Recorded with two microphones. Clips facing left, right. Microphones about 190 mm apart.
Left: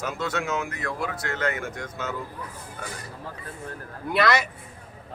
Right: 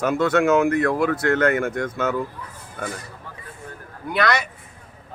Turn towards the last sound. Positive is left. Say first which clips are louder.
# right 1 dB
turn(degrees=0)  # may be behind; listen again after turning